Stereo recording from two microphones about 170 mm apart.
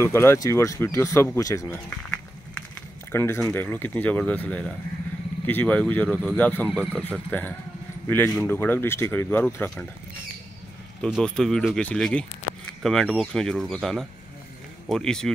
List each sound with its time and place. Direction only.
0.0 s speech: 15° left (ahead or behind)
3.1 s speech: 15° left (ahead or behind)
11.0 s speech: centre (ahead or behind)